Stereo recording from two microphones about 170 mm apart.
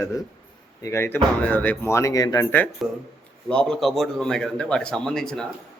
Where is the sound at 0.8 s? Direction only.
15° left (ahead or behind).